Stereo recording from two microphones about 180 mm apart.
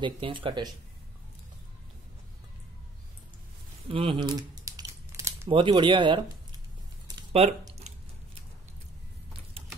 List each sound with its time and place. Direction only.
0.0 s speech: 30° right (ahead or behind)
3.9 s crumpling: 30° right (ahead or behind)
5.5 s speech: 30° right (ahead or behind)